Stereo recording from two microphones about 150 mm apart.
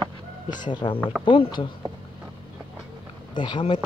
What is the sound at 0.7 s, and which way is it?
Speech, 30° left (ahead or behind).